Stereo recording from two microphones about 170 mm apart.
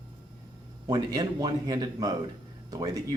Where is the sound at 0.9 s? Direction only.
25° right (ahead or behind).